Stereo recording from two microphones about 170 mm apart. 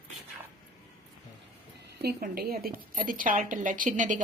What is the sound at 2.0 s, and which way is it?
A woman's voice, 65° right (ahead or behind).